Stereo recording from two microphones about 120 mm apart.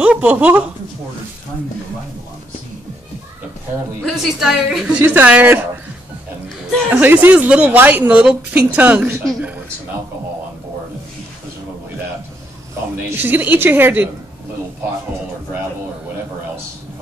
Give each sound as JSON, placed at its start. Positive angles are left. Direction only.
{"t": 0.0, "sound": "a woman's voice", "side_deg": -10}
{"t": 4.0, "sound": "a woman's voice", "side_deg": -5}
{"t": 6.9, "sound": "a woman's voice", "side_deg": -15}
{"t": 13.1, "sound": "a woman's voice", "side_deg": -15}